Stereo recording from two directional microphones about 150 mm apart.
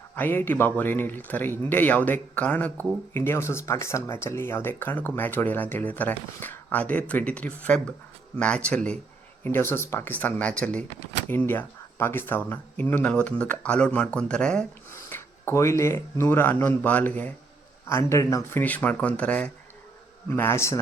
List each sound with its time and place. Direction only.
0.2 s speech: 15° left (ahead or behind)
14.8 s speech: 15° left (ahead or behind)